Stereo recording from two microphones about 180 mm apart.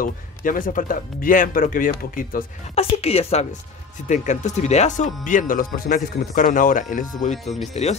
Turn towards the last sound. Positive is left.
turn(degrees=40)  # may be behind; listen again after turning